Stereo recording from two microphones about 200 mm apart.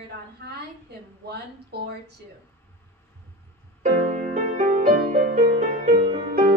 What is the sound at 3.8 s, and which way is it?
Music, 40° right (ahead or behind).